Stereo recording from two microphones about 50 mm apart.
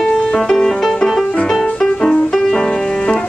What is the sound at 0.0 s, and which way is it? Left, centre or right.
Music, centre.